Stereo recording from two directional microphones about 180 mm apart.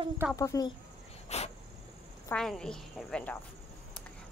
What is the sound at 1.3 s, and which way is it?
Cricket, 35° left (ahead or behind).